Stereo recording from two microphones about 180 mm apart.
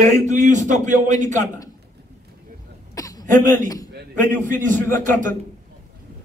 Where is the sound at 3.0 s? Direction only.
20° left (ahead or behind).